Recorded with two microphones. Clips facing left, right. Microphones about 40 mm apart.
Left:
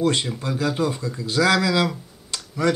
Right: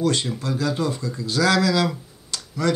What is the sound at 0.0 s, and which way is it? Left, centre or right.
Speech, left.